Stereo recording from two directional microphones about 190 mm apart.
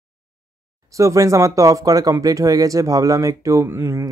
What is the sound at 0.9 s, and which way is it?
Speech, 15° right (ahead or behind).